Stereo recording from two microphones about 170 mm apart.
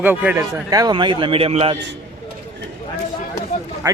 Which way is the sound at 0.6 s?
20° right (ahead or behind).